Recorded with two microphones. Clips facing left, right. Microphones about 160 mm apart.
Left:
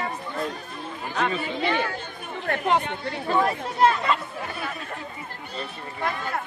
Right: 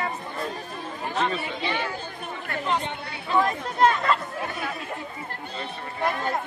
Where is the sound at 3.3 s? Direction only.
45° left (ahead or behind).